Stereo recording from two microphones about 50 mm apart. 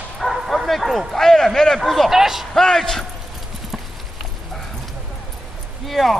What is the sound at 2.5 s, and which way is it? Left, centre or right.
Speech, centre.